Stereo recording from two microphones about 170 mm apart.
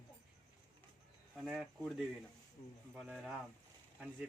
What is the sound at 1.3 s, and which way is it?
Speech, centre (ahead or behind).